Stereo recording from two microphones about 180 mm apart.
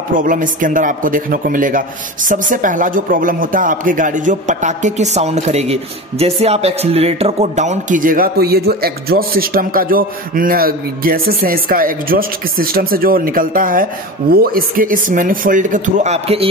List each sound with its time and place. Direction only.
0.1 s speech: 50° right (ahead or behind)